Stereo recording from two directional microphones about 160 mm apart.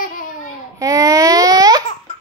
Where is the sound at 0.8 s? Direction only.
20° right (ahead or behind).